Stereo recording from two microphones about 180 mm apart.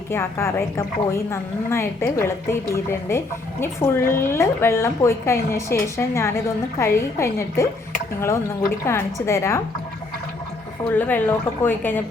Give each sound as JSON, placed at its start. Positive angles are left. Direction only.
{"t": 0.1, "sound": "a woman's voice", "side_deg": 15}
{"t": 8.8, "sound": "a woman's voice", "side_deg": 15}
{"t": 10.8, "sound": "a woman's voice", "side_deg": 10}